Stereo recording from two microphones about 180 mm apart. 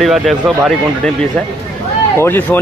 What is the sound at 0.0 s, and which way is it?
Speech, centre (ahead or behind).